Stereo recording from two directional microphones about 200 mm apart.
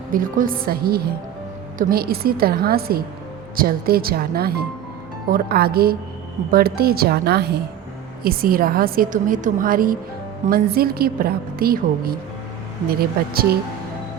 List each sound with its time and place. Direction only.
0.1 s a woman's voice: 45° right (ahead or behind)